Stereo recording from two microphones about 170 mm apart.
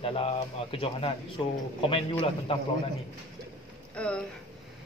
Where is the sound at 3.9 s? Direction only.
5° left (ahead or behind).